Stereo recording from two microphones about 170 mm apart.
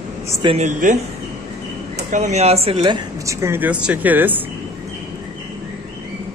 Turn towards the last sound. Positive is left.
turn(degrees=-10)  # may be behind; listen again after turning